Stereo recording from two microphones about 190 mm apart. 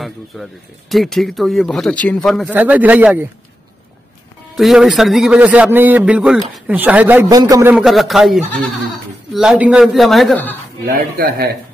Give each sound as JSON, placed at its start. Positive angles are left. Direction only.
{"t": 0.0, "sound": "a man's voice", "side_deg": 0}
{"t": 4.6, "sound": "a man's voice", "side_deg": 0}
{"t": 7.2, "sound": "a man's voice", "side_deg": -20}
{"t": 7.7, "sound": "speech", "side_deg": 0}
{"t": 10.9, "sound": "speech", "side_deg": -50}